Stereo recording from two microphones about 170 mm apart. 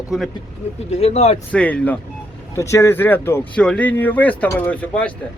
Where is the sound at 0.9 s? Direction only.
40° left (ahead or behind).